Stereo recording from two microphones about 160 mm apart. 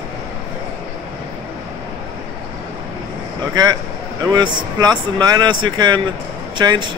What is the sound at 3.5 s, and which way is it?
A man's voice, 25° right (ahead or behind).